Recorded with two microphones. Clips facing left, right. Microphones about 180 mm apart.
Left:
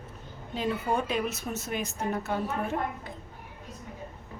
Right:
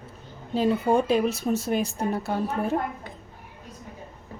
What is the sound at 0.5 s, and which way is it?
A woman's voice, 30° right (ahead or behind).